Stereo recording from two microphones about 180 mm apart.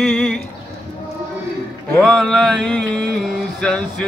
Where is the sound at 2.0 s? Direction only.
Centre (ahead or behind).